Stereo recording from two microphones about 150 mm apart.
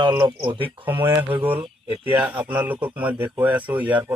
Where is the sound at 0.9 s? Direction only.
15° right (ahead or behind).